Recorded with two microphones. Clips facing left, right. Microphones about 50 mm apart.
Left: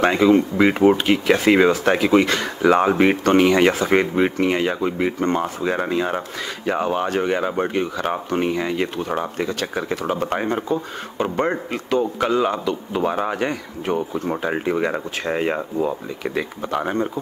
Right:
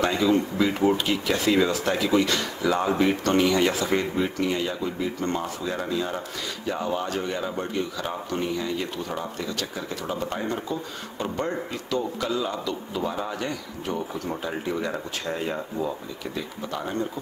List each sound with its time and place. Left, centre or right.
0.0 s speech: left